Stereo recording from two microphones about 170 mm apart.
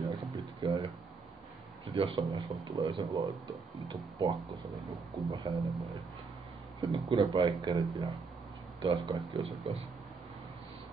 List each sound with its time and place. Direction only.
0.0 s a sound: 20° right (ahead or behind)
1.9 s speech: 30° right (ahead or behind)
6.9 s speech: 25° right (ahead or behind)